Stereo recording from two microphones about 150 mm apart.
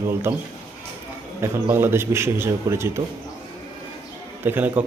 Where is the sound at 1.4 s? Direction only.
15° right (ahead or behind).